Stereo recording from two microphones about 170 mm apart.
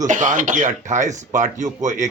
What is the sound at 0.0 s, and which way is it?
Speech, 45° right (ahead or behind).